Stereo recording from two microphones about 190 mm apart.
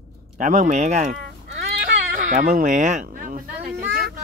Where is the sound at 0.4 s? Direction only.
40° right (ahead or behind).